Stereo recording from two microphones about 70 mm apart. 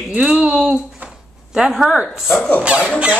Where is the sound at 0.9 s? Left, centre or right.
Centre.